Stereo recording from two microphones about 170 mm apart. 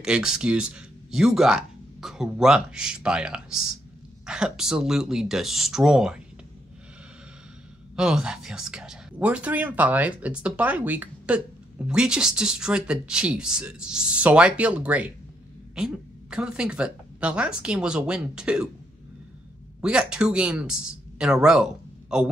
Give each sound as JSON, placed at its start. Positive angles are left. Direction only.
{"t": 0.0, "sound": "speech", "side_deg": -5}
{"t": 7.9, "sound": "speech", "side_deg": -5}
{"t": 19.8, "sound": "speech", "side_deg": -5}